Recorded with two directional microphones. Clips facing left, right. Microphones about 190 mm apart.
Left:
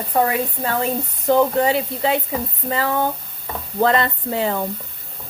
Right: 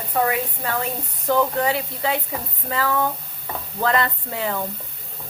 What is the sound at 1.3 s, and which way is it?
Speech, 25° left (ahead or behind).